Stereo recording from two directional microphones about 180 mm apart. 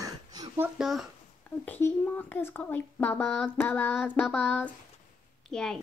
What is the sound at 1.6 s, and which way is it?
Speech, 10° left (ahead or behind).